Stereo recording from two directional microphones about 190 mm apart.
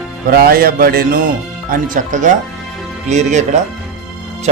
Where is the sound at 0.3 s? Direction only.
50° right (ahead or behind).